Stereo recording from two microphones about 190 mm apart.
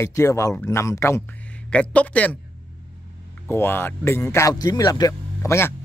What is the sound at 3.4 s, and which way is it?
Speech, 10° left (ahead or behind).